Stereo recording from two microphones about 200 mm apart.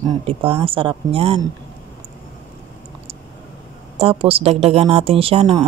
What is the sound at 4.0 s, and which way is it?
Speech, 30° right (ahead or behind).